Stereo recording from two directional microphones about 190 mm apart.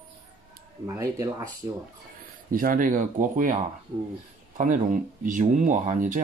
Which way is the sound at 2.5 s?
45° right (ahead or behind).